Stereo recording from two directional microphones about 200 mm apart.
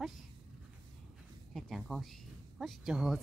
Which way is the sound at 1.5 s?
Centre (ahead or behind).